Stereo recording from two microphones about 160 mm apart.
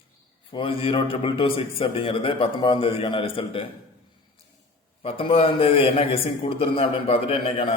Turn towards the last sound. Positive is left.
turn(degrees=35)  # may be behind; listen again after turning